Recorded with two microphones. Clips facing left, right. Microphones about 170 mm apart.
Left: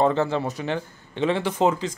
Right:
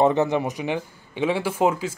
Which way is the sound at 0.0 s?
20° right (ahead or behind).